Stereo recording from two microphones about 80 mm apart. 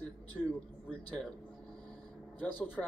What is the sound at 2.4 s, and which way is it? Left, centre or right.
Speech, left.